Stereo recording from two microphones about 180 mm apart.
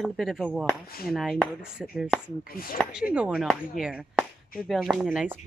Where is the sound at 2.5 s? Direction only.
55° left (ahead or behind).